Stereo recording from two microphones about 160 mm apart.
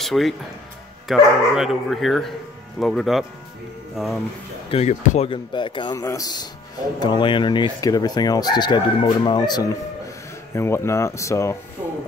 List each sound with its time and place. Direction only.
0.0 s speech: centre (ahead or behind)
4.6 s speech: 40° left (ahead or behind)
5.3 s speech: 30° left (ahead or behind)